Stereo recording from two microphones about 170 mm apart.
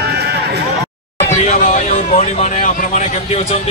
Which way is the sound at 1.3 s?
40° left (ahead or behind).